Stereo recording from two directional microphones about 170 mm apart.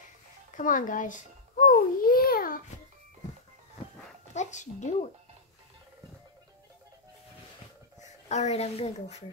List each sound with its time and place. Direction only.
0.6 s speech: 50° left (ahead or behind)
1.7 s babbling: 60° left (ahead or behind)
4.3 s speech: 45° left (ahead or behind)
8.0 s speech: 40° left (ahead or behind)